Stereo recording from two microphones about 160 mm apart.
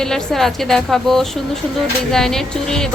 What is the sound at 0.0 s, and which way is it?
Speech, 5° left (ahead or behind).